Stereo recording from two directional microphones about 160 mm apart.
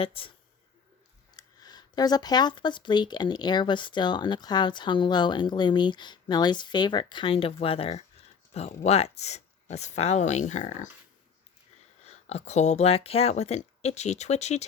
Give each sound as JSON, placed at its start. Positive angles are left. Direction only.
{"t": 0.0, "sound": "speech", "side_deg": 35}
{"t": 1.4, "sound": "speech", "side_deg": 25}
{"t": 12.0, "sound": "speech", "side_deg": 45}